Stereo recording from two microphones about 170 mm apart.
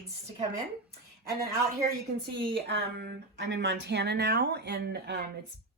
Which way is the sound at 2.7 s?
80° right.